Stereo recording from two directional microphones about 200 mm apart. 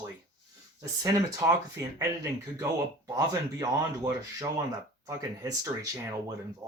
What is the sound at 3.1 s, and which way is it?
Speech, 15° right (ahead or behind).